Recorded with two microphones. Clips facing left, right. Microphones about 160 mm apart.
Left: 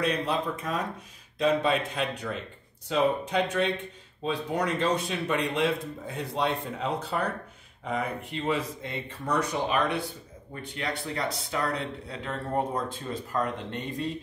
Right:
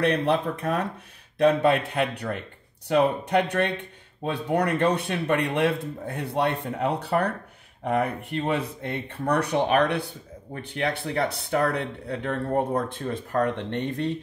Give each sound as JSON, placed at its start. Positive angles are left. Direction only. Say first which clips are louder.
{"t": 0.0, "sound": "speech", "louder": "right 5 dB", "side_deg": -60}